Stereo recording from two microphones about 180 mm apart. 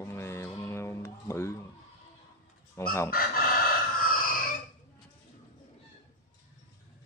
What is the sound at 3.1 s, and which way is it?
Chicken, 55° left (ahead or behind).